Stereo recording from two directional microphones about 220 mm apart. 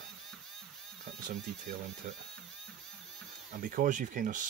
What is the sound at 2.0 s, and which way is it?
Speech, 35° right (ahead or behind).